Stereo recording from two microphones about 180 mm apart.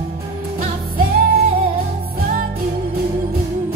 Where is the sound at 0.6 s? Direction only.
55° right (ahead or behind).